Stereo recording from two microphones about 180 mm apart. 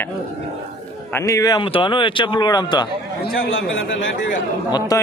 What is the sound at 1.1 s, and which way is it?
Speech, 15° left (ahead or behind).